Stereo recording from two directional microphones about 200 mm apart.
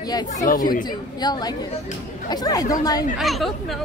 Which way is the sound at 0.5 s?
45° left (ahead or behind).